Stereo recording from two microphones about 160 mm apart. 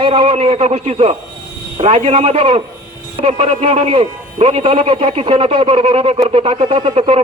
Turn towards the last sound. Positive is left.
turn(degrees=-35)  # may be behind; listen again after turning